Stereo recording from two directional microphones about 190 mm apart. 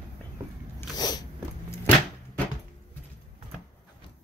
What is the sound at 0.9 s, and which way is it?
Biting, 20° left (ahead or behind).